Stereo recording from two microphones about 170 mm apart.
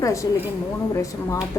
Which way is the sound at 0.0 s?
20° left (ahead or behind).